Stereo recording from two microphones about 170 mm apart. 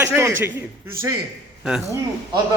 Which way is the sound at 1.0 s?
60° right (ahead or behind).